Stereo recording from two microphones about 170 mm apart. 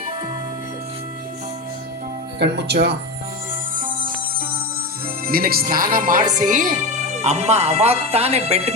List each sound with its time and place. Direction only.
2.4 s speech: 80° right
5.2 s speech: 60° right (ahead or behind); by 8.7 s 35° right (ahead or behind)